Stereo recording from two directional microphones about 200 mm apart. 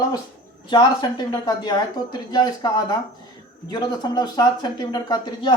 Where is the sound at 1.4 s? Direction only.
20° left (ahead or behind).